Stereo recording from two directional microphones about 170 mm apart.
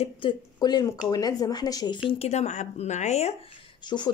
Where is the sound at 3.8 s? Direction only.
25° left (ahead or behind).